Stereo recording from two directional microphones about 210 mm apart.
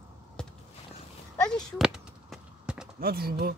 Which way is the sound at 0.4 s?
5° left (ahead or behind).